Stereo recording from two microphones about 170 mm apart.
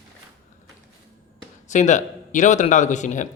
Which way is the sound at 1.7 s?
45° left (ahead or behind).